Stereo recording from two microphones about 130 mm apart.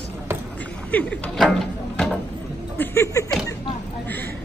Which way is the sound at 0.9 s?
10° left (ahead or behind).